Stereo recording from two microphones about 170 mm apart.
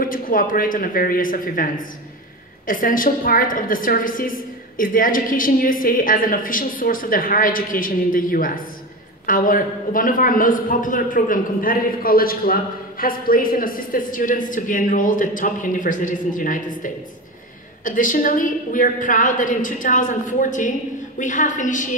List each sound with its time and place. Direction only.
0.0 s a woman's voice: 55° left (ahead or behind)